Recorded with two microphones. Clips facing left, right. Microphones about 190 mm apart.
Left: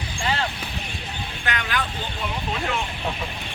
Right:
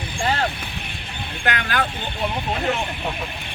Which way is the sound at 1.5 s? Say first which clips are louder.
Right 4 dB; 55° right (ahead or behind).